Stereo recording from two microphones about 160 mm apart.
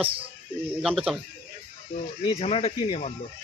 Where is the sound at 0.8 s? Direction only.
5° right (ahead or behind).